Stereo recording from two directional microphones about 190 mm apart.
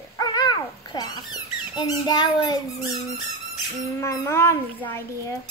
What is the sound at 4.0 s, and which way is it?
A child's voice, 15° left (ahead or behind).